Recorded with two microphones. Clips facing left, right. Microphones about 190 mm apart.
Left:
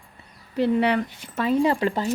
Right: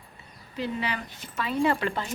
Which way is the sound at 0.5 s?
65° left (ahead or behind).